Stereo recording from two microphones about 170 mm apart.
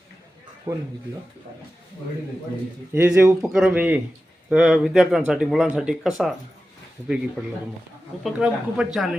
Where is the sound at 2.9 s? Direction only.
10° right (ahead or behind).